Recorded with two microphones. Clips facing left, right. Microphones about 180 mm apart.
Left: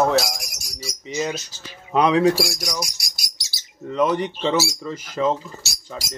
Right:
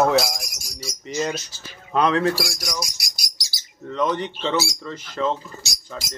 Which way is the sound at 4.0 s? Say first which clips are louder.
Left 3 dB; 10° left (ahead or behind).